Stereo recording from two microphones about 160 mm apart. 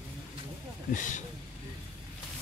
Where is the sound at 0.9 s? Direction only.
50° left (ahead or behind).